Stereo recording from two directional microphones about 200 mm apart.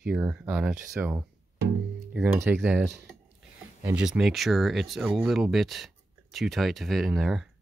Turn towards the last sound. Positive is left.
turn(degrees=0)  # may be behind; listen again after turning